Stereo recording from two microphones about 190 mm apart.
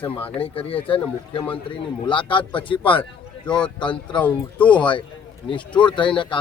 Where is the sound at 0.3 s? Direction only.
30° left (ahead or behind).